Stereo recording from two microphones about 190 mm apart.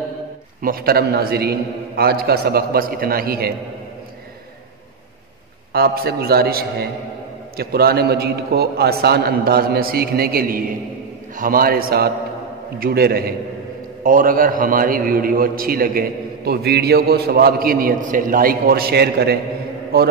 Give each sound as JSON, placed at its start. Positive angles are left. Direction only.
{"t": 0.6, "sound": "a man's voice", "side_deg": -50}
{"t": 5.7, "sound": "a man's voice", "side_deg": -55}